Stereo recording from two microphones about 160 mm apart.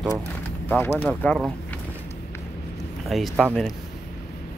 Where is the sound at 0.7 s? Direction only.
10° left (ahead or behind).